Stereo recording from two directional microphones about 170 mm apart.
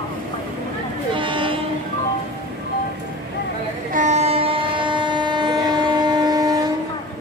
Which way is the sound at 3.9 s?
45° right (ahead or behind).